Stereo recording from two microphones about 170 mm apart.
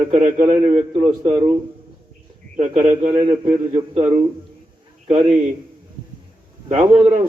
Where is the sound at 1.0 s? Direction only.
25° right (ahead or behind).